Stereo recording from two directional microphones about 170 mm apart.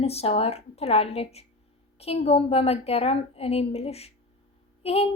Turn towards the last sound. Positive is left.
turn(degrees=35)  # may be behind; listen again after turning